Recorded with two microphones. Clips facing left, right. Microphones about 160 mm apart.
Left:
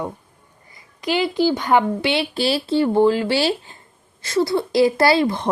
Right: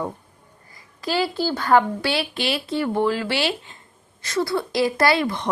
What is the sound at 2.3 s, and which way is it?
Speech, 35° left (ahead or behind).